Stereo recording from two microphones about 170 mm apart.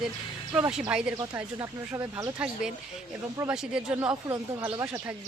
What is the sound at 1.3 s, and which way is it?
Speech, 15° right (ahead or behind).